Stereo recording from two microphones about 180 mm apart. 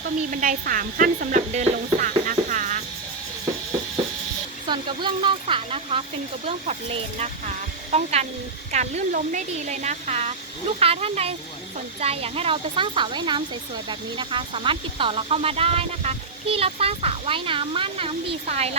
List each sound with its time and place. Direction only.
0.3 s speech: 50° right (ahead or behind)
4.7 s speech: 25° right (ahead or behind)